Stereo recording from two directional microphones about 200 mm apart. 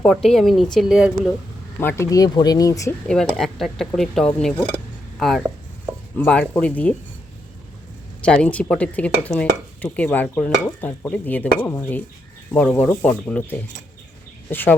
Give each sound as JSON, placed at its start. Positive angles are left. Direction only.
{"t": 0.0, "sound": "speech", "side_deg": 0}
{"t": 1.8, "sound": "dishes", "side_deg": 10}
{"t": 3.3, "sound": "speech", "side_deg": 0}
{"t": 6.1, "sound": "dishes", "side_deg": 5}
{"t": 8.2, "sound": "dishes", "side_deg": 5}